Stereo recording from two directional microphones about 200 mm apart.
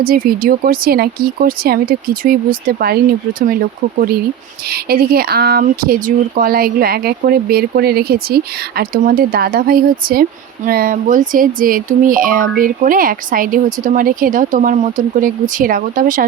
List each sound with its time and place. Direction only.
0.0 s speech: 45° right (ahead or behind)
4.7 s speech: 50° right (ahead or behind)